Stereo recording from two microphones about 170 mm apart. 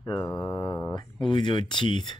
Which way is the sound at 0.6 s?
10° left (ahead or behind).